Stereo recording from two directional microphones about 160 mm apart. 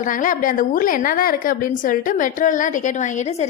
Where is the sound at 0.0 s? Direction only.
55° left (ahead or behind).